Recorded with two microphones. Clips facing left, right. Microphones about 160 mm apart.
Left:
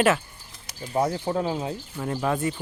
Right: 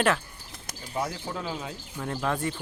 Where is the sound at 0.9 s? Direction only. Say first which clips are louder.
Left 8 dB; 35° left (ahead or behind).